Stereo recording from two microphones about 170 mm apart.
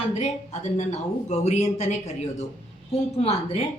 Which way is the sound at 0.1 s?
40° left (ahead or behind).